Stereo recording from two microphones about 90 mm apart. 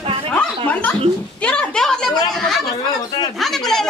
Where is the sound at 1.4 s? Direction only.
10° left (ahead or behind).